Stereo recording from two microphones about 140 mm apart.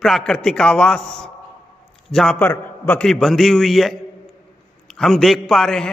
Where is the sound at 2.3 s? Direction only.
15° left (ahead or behind).